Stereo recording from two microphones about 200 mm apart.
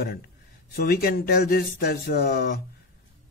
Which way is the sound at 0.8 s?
50° left (ahead or behind).